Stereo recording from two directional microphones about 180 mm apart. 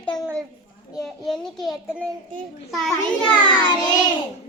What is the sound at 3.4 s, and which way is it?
Child singing, 25° left (ahead or behind).